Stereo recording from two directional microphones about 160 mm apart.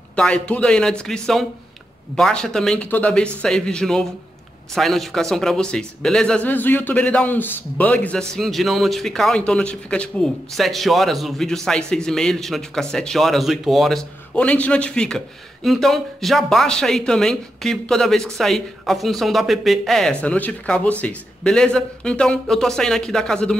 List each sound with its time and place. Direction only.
0.1 s a man's voice: 5° left (ahead or behind)